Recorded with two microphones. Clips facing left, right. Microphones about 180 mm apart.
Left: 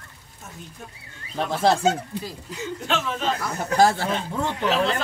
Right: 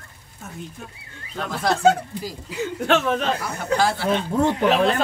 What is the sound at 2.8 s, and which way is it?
Speech, 55° right (ahead or behind).